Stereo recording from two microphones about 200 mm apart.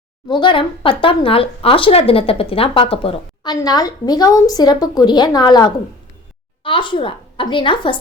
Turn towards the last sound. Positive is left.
turn(degrees=25)  # may be behind; listen again after turning